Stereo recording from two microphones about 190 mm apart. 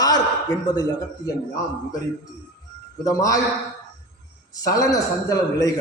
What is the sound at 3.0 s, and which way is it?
Speech, 15° left (ahead or behind).